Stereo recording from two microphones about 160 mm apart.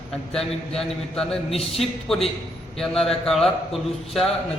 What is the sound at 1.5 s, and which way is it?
Speech, 40° left (ahead or behind).